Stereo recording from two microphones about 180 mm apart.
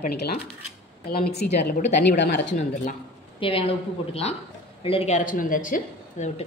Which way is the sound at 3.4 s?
30° left (ahead or behind).